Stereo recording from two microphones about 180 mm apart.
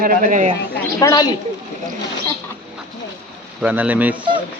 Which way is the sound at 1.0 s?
20° left (ahead or behind).